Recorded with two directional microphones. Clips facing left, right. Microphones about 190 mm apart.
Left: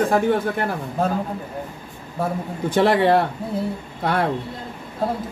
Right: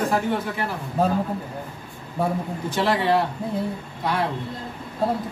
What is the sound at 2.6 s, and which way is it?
Speech, 55° left (ahead or behind).